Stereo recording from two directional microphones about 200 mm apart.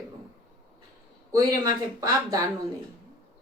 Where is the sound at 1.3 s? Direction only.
20° right (ahead or behind).